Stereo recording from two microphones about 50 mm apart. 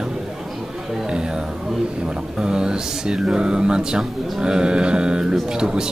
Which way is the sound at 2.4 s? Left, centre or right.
Centre.